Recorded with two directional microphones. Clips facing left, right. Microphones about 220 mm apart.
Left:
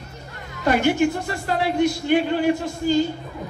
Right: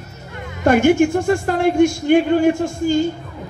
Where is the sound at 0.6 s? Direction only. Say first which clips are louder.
Right 6 dB; 50° right (ahead or behind).